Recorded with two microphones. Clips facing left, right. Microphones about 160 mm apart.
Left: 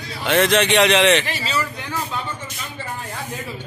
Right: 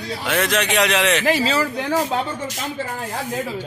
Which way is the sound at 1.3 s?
90° right.